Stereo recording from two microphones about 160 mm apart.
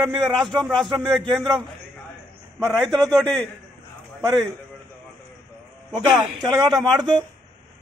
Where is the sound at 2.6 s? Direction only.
5° left (ahead or behind).